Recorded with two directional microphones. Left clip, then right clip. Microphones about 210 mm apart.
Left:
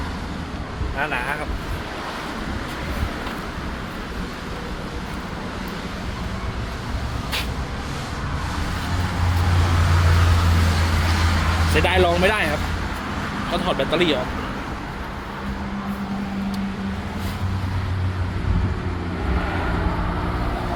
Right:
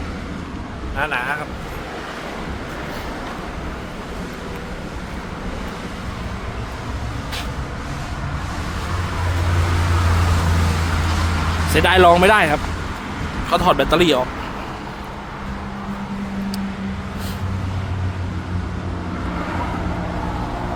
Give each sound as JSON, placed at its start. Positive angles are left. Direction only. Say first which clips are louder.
{"t": 0.9, "sound": "speech", "louder": "right 3 dB", "side_deg": -10}
{"t": 11.8, "sound": "speech", "louder": "right 7 dB", "side_deg": -30}
{"t": 13.5, "sound": "speech", "louder": "right 7 dB", "side_deg": -30}